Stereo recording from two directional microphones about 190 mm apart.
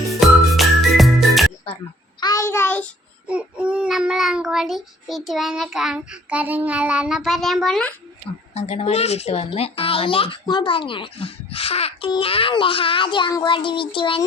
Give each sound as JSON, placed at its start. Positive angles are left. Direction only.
{"t": 0.1, "sound": "music", "side_deg": 0}
{"t": 2.2, "sound": "a child's voice", "side_deg": 15}
{"t": 3.2, "sound": "child singing", "side_deg": -5}
{"t": 8.5, "sound": "speech", "side_deg": 35}